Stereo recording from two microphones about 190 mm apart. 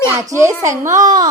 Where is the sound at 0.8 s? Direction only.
40° right (ahead or behind).